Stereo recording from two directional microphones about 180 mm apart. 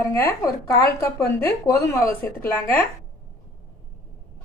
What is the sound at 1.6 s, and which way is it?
A woman's voice, 15° left (ahead or behind).